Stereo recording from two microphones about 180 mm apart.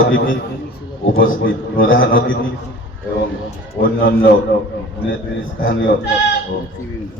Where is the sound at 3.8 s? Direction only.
50° left (ahead or behind).